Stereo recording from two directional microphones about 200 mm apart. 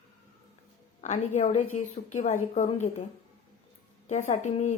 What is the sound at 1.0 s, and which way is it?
Speech, 35° left (ahead or behind).